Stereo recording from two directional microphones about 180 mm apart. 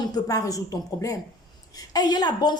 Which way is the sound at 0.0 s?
20° left (ahead or behind).